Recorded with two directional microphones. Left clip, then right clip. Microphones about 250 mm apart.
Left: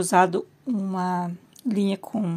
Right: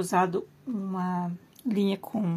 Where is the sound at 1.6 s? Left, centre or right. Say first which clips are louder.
Left 2 dB; centre.